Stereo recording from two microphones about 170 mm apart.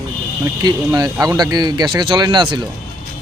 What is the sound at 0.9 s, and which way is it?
Speech, 20° right (ahead or behind).